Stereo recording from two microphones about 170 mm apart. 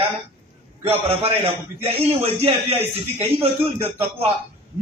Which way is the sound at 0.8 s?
35° right (ahead or behind).